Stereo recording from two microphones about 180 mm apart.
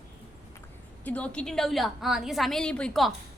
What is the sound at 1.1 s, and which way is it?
A woman's voice, 5° left (ahead or behind).